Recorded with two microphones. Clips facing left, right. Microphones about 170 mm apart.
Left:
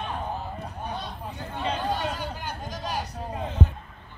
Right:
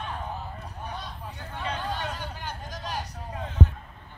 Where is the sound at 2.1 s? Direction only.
10° left (ahead or behind).